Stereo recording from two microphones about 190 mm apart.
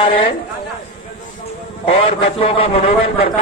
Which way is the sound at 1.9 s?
30° left (ahead or behind).